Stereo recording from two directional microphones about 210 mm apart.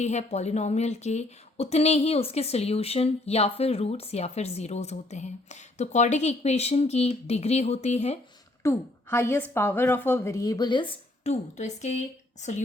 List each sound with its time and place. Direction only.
0.0 s speech: 35° left (ahead or behind)
8.6 s a woman's voice: 10° left (ahead or behind); by 12.6 s 35° left (ahead or behind)